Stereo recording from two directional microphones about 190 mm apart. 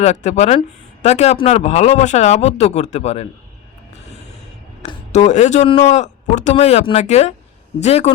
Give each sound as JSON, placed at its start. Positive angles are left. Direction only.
{"t": 0.0, "sound": "speech", "side_deg": 35}
{"t": 4.8, "sound": "speech", "side_deg": 35}